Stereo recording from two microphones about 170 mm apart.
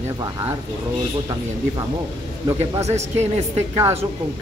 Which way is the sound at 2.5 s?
20° right (ahead or behind).